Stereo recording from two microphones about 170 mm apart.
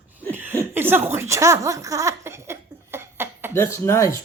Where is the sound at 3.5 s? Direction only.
15° left (ahead or behind).